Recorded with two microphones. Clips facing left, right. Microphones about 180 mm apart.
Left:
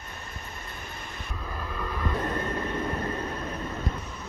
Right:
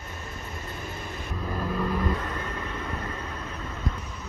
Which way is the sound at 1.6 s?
10° right (ahead or behind).